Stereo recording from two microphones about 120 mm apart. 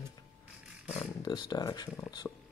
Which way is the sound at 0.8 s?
65° left (ahead or behind).